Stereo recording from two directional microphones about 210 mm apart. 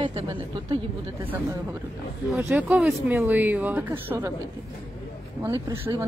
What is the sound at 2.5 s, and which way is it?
A woman's voice, 5° right (ahead or behind).